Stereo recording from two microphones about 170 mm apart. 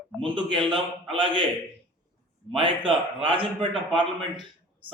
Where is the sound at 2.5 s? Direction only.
30° right (ahead or behind).